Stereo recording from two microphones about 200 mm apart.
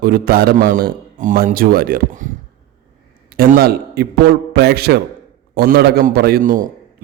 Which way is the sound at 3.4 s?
50° right (ahead or behind).